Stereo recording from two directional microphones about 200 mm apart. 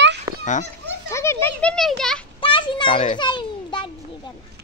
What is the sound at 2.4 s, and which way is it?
Children playing, 25° left (ahead or behind).